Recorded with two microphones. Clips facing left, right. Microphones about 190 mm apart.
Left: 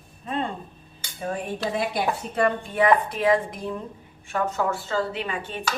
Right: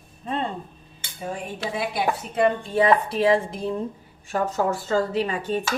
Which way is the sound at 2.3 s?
25° right (ahead or behind).